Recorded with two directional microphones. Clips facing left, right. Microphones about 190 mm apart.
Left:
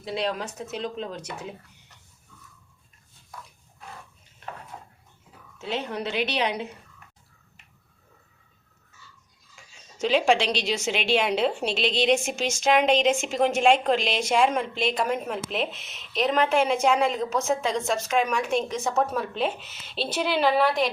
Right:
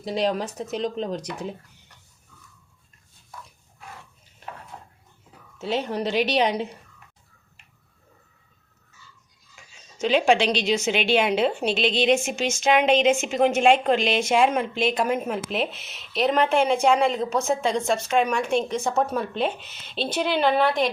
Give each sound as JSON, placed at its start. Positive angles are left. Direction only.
{"t": 0.0, "sound": "a woman's voice", "side_deg": -40}
{"t": 4.7, "sound": "a sound", "side_deg": 5}
{"t": 5.7, "sound": "a woman's voice", "side_deg": -35}
{"t": 9.6, "sound": "a woman's voice", "side_deg": 0}